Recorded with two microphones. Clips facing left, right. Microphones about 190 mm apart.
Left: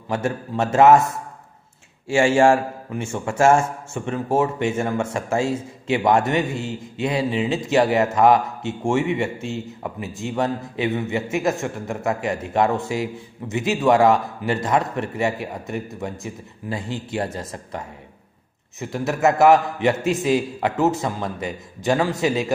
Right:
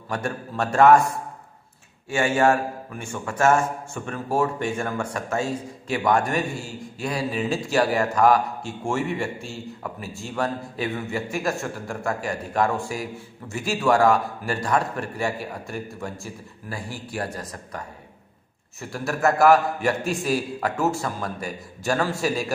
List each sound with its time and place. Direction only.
0.1 s a man's voice: 20° left (ahead or behind)